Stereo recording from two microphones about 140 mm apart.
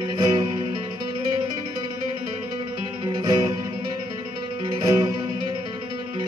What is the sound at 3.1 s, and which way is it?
Music, 30° right (ahead or behind).